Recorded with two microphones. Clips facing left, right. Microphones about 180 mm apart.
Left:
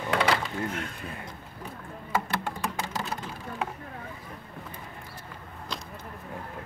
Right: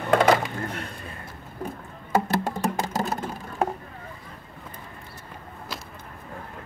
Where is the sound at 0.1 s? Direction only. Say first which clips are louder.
Right 7 dB; 45° right (ahead or behind).